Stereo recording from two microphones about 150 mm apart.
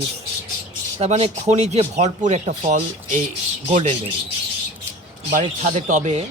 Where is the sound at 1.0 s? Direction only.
45° right (ahead or behind).